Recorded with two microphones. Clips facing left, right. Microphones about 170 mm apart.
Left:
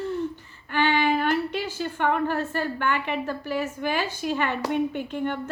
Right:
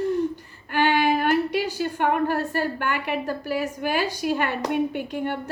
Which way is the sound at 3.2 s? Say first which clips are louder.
Right 2 dB; 35° right (ahead or behind).